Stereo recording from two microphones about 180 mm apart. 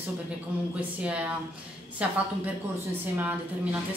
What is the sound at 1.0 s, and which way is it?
A woman's voice, 5° right (ahead or behind).